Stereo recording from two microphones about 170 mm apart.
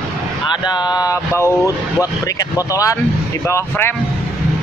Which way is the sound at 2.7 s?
20° left (ahead or behind).